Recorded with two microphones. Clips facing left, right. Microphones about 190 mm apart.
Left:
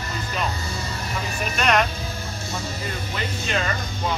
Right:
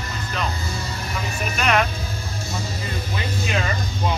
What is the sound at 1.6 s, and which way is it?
Speech, 5° right (ahead or behind).